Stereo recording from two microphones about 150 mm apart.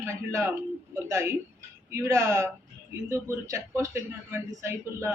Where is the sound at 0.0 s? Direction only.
20° right (ahead or behind).